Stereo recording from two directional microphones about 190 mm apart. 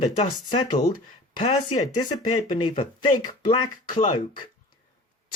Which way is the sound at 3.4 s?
25° left (ahead or behind).